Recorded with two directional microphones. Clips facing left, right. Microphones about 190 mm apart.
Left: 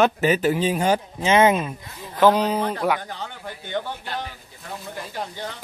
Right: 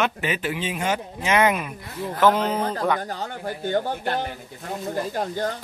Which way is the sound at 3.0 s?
45° right (ahead or behind).